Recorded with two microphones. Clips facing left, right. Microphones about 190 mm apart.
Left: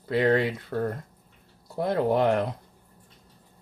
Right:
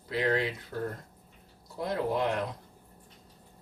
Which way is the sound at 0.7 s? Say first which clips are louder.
Left 7 dB; 70° left (ahead or behind).